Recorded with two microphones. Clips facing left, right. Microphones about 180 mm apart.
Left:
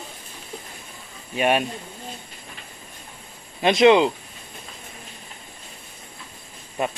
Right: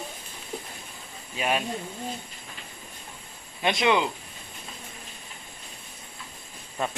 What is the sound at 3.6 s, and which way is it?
Speech, 20° left (ahead or behind).